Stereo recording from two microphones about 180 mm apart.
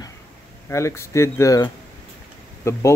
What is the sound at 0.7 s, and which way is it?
Speech, 15° left (ahead or behind).